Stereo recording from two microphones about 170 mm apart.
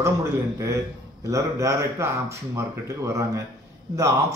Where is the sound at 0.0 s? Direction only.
15° right (ahead or behind).